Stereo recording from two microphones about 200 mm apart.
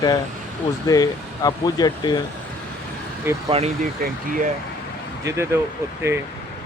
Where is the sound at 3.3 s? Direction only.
10° right (ahead or behind).